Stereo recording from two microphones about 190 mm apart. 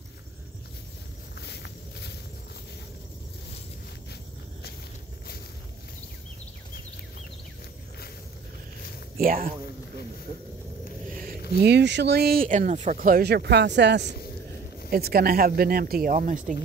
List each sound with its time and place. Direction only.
1.4 s walk: 60° left (ahead or behind)
9.2 s speech: 50° right (ahead or behind)
11.5 s speech: 60° right (ahead or behind); by 16.5 s 45° right (ahead or behind)